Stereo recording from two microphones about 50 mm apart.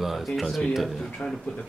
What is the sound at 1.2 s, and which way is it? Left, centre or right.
Speech, centre.